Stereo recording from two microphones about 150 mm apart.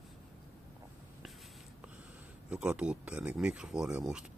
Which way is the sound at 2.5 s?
5° right (ahead or behind).